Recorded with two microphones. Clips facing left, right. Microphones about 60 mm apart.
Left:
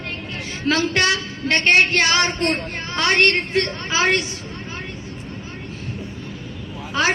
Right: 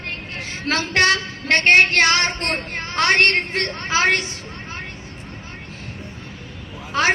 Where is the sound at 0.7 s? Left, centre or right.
Right.